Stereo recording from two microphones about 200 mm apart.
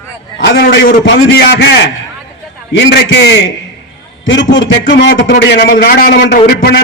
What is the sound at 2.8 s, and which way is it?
A man's voice, 60° left (ahead or behind).